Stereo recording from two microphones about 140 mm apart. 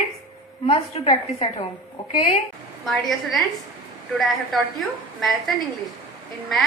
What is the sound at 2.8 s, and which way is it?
A woman's voice, centre (ahead or behind).